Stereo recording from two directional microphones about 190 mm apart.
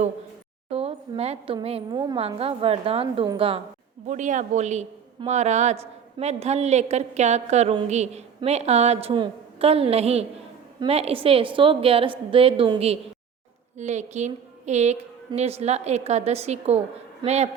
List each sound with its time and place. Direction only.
0.7 s a woman's voice: 30° right (ahead or behind)
4.0 s a woman's voice: 40° right (ahead or behind)